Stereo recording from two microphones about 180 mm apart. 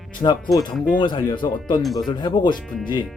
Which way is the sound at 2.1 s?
25° left (ahead or behind).